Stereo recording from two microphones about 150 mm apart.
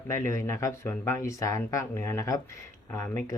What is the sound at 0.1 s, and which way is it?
Speech, 20° left (ahead or behind).